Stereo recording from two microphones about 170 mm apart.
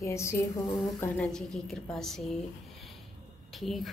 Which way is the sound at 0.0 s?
15° left (ahead or behind).